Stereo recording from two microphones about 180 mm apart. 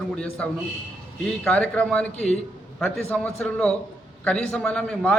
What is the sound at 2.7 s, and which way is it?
A man's voice, 5° left (ahead or behind).